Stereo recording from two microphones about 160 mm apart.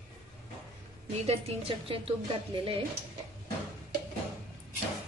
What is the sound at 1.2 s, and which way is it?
A woman's voice, 35° right (ahead or behind).